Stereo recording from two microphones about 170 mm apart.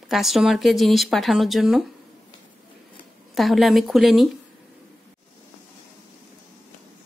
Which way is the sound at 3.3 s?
Centre (ahead or behind).